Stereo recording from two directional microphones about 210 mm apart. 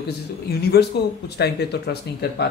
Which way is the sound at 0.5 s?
50° left (ahead or behind).